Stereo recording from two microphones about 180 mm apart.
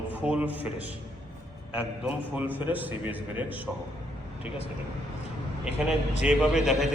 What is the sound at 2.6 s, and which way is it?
Speech, 10° right (ahead or behind).